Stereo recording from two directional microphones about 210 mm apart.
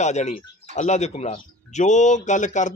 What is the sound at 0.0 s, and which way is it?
Speech, 35° left (ahead or behind).